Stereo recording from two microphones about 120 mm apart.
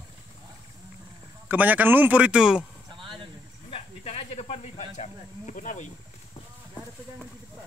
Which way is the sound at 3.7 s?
55° left (ahead or behind).